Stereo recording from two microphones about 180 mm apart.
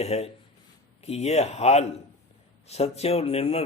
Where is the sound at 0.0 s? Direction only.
35° left (ahead or behind).